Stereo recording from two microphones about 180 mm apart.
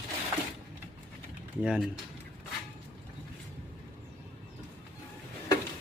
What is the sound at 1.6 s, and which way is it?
Speech, 5° right (ahead or behind).